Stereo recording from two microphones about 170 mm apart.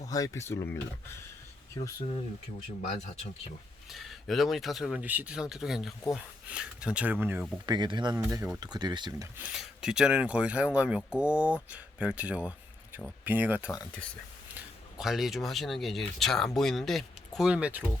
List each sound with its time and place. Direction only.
0.1 s speech: 20° left (ahead or behind)
3.8 s speech: centre (ahead or behind)
7.7 s speech: 25° right (ahead or behind)
8.1 s speech: 15° right (ahead or behind)
9.4 s speech: 5° right (ahead or behind)
14.9 s speech: centre (ahead or behind)